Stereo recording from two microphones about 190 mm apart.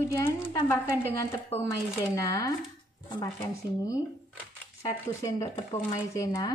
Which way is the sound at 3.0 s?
20° left (ahead or behind).